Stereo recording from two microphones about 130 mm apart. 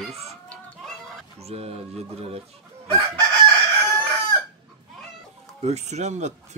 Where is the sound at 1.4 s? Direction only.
50° right (ahead or behind).